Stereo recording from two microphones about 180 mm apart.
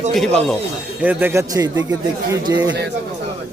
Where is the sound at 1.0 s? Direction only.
10° right (ahead or behind).